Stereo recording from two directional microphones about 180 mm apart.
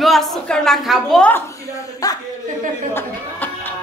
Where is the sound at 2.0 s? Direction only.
20° left (ahead or behind).